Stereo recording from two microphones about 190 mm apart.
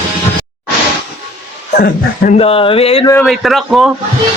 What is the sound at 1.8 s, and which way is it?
Speech, 50° left (ahead or behind).